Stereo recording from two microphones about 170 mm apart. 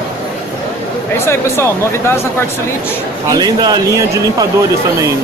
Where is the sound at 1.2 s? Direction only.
15° left (ahead or behind).